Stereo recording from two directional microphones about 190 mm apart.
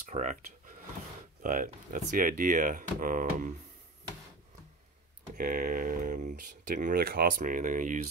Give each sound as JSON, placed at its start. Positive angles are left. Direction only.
{"t": 0.1, "sound": "speech", "side_deg": -40}
{"t": 5.3, "sound": "speech", "side_deg": -45}